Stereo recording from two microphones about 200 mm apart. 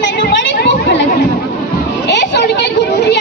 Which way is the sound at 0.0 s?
60° left (ahead or behind).